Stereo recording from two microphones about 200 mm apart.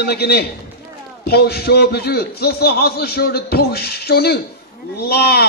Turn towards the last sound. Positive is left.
turn(degrees=55)  # may be behind; listen again after turning